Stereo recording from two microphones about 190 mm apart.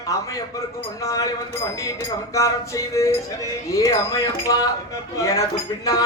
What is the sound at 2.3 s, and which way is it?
Speech, 15° left (ahead or behind).